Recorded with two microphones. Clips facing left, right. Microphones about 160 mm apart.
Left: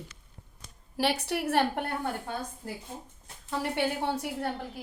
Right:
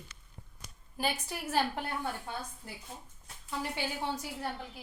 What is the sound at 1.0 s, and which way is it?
A woman's voice, 75° left (ahead or behind).